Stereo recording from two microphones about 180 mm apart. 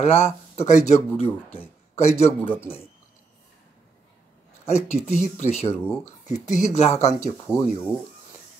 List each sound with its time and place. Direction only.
0.0 s speech: 35° left (ahead or behind)
2.4 s speech: 10° left (ahead or behind)
4.6 s speech: 40° left (ahead or behind)
7.2 s speech: 15° left (ahead or behind)